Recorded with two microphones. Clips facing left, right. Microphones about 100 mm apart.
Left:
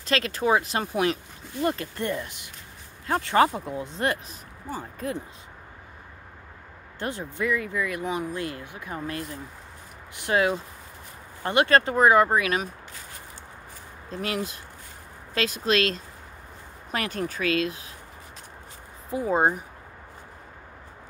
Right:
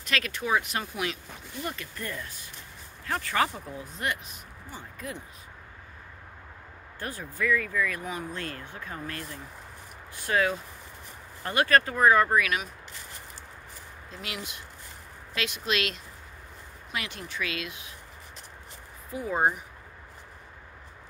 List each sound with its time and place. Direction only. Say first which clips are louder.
0.0 s speech: left 6 dB; 30° left (ahead or behind)
7.0 s speech: left 3 dB; 25° left (ahead or behind)
14.1 s speech: left 9 dB; 40° left (ahead or behind)
19.0 s speech: left 4 dB; 30° left (ahead or behind)